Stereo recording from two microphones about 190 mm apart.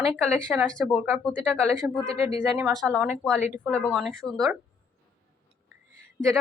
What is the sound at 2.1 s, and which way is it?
Speech, 30° left (ahead or behind).